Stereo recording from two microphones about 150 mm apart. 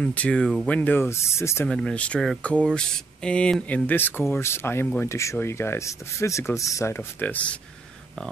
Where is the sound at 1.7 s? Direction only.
5° left (ahead or behind).